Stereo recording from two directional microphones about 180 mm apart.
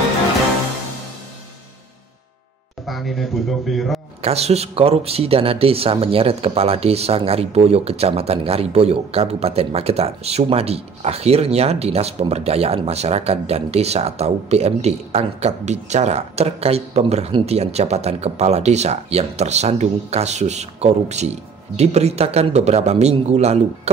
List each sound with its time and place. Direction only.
2.9 s speech: centre (ahead or behind)
4.2 s speech: 35° right (ahead or behind)